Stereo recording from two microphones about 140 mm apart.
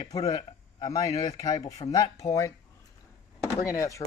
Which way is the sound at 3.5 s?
20° left (ahead or behind).